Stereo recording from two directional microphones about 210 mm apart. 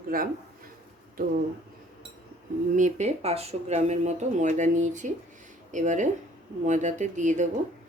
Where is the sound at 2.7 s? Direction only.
35° right (ahead or behind).